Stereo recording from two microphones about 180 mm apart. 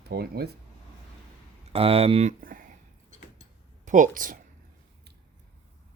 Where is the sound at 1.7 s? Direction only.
30° right (ahead or behind); by 2.7 s 50° right (ahead or behind).